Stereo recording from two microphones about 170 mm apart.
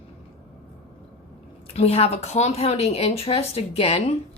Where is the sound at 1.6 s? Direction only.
35° left (ahead or behind).